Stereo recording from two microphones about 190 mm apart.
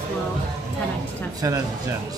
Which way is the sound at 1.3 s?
15° right (ahead or behind).